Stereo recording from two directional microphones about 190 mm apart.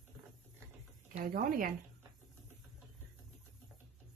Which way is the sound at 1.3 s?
50° right (ahead or behind).